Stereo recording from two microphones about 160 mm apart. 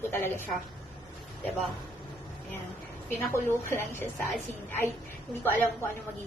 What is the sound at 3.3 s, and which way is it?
Speech, 15° left (ahead or behind).